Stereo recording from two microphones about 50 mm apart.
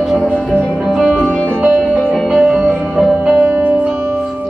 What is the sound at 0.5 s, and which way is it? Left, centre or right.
Music, centre.